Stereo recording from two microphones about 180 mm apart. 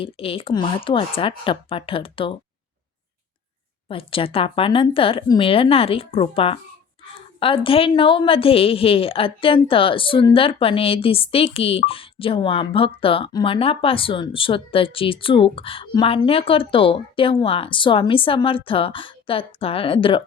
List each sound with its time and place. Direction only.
0.0 s a woman's voice: 30° left (ahead or behind)
3.8 s a woman's voice: 30° left (ahead or behind)